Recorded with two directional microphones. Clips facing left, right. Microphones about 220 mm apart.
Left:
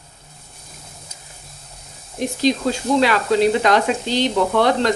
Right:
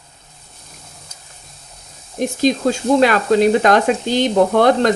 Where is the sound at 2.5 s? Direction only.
50° right (ahead or behind).